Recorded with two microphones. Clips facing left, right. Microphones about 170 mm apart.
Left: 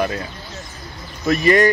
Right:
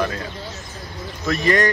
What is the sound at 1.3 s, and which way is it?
Speech, 10° left (ahead or behind).